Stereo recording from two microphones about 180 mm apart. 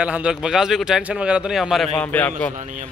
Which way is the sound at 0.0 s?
5° right (ahead or behind).